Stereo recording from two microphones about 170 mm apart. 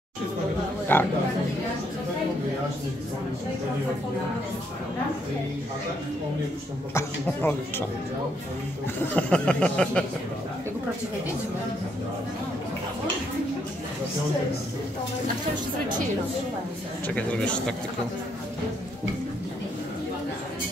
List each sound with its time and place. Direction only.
0.9 s speech: 10° left (ahead or behind)
6.9 s speech: 15° left (ahead or behind)
9.1 s speech: 5° left (ahead or behind)
17.1 s speech: 5° left (ahead or behind)